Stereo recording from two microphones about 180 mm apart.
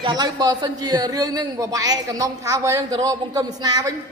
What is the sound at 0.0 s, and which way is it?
A woman's voice, 25° right (ahead or behind).